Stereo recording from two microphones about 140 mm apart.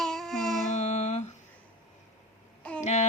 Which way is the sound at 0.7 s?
55° left (ahead or behind).